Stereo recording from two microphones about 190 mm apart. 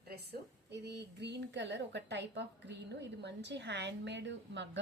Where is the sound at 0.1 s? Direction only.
60° right (ahead or behind).